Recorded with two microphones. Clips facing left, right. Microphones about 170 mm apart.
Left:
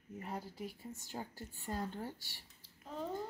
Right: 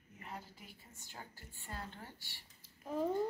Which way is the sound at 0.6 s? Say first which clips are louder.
Left 12 dB; 40° left (ahead or behind).